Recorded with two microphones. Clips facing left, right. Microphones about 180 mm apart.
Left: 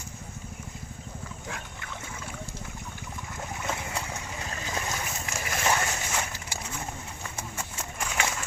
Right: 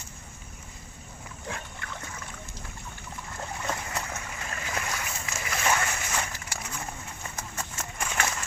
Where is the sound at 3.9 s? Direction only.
15° left (ahead or behind).